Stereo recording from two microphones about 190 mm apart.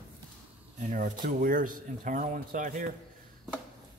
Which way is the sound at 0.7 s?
40° right (ahead or behind).